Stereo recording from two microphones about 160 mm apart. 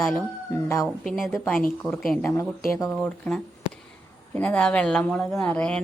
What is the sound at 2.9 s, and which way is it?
Speech, 5° left (ahead or behind).